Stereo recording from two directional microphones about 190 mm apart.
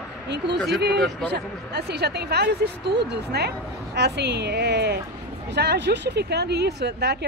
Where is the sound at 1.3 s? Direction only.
60° right (ahead or behind).